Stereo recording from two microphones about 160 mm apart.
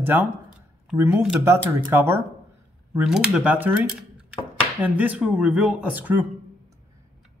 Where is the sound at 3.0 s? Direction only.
5° right (ahead or behind).